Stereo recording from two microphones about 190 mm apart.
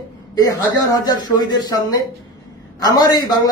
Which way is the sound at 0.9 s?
20° left (ahead or behind).